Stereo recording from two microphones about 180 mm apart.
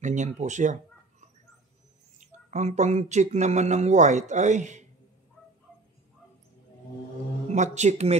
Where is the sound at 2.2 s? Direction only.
40° right (ahead or behind).